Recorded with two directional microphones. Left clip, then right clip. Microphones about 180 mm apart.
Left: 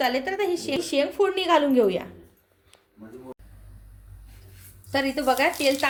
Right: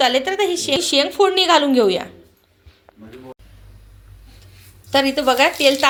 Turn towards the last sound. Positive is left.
turn(degrees=-20)  # may be behind; listen again after turning